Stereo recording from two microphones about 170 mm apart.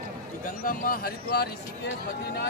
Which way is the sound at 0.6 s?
55° left (ahead or behind).